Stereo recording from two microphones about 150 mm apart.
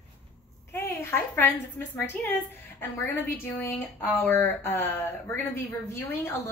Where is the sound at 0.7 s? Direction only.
15° left (ahead or behind).